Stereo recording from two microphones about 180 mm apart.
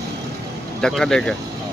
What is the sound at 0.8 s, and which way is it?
Speech, 5° left (ahead or behind).